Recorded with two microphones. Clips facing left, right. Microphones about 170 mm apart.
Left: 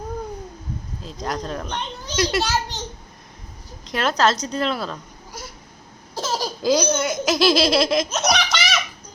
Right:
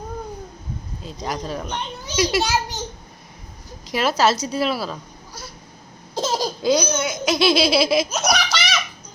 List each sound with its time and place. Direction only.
1.0 s a child's voice: 5° right (ahead or behind)
3.8 s a child's voice: 5° right (ahead or behind)
6.1 s baby laughter: 15° right (ahead or behind)
6.6 s speech: centre (ahead or behind)